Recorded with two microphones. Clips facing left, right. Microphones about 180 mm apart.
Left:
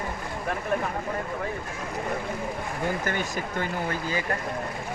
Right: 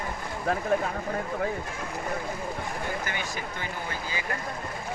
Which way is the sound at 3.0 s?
45° left (ahead or behind).